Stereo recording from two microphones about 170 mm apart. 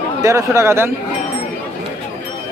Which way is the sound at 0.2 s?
15° right (ahead or behind).